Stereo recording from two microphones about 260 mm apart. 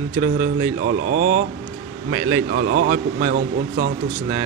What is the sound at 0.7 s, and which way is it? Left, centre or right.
Speech, right.